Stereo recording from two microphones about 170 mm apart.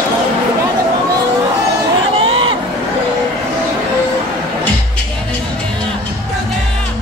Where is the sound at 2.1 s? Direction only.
30° right (ahead or behind).